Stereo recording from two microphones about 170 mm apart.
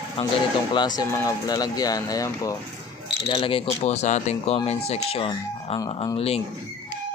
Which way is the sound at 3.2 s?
30° left (ahead or behind).